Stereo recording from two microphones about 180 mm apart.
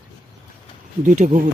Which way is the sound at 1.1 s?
45° right (ahead or behind).